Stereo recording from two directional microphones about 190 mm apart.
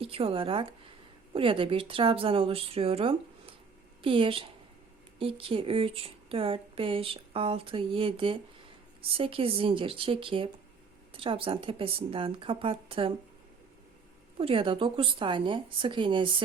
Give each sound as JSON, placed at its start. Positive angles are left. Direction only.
{"t": 0.0, "sound": "speech", "side_deg": -30}
{"t": 14.3, "sound": "speech", "side_deg": -30}